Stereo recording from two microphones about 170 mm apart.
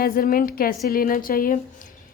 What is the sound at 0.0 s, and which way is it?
A woman's voice, 60° left (ahead or behind).